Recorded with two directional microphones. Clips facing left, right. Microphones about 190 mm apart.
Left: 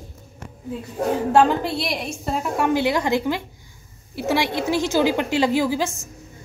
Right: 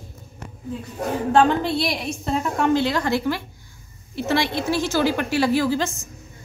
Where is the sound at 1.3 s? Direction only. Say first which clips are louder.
Right 1 dB; 5° left (ahead or behind).